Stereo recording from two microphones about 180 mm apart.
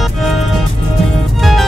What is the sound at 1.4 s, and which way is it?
Music, centre (ahead or behind).